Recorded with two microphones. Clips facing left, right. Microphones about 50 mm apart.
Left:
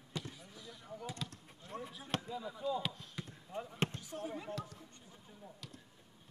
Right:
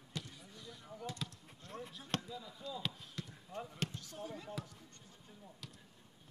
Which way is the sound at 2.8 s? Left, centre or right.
Centre.